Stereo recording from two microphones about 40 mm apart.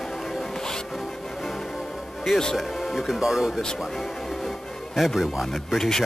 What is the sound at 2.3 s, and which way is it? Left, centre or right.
Speech, centre.